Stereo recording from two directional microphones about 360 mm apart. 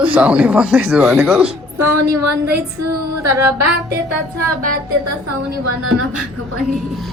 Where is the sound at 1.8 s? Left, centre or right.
Right.